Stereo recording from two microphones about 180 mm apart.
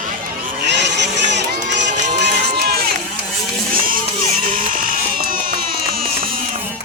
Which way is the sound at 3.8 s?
50° right (ahead or behind).